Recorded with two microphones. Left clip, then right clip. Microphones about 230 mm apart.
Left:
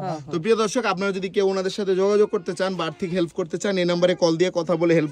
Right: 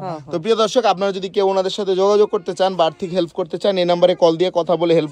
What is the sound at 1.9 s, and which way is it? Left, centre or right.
Speech, centre.